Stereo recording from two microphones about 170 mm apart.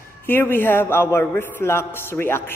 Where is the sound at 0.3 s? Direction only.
10° left (ahead or behind).